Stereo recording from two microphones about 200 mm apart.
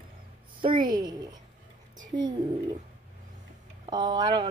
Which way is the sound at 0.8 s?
20° right (ahead or behind).